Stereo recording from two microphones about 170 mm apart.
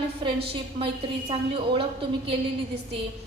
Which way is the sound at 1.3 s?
35° right (ahead or behind).